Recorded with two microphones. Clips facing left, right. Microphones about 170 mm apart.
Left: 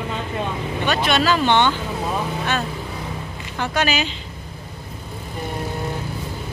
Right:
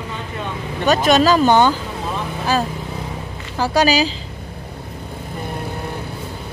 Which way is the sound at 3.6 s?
35° right (ahead or behind).